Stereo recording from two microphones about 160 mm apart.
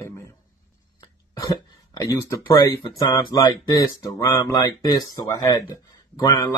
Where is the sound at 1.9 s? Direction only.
20° left (ahead or behind).